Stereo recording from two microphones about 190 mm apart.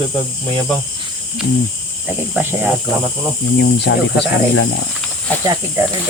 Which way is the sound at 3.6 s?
60° left (ahead or behind).